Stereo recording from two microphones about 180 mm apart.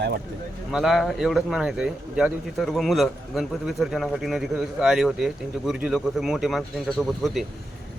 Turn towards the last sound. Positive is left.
turn(degrees=0)  # may be behind; listen again after turning